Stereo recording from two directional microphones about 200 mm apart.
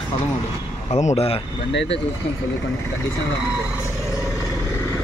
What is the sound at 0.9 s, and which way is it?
Speech, 35° left (ahead or behind).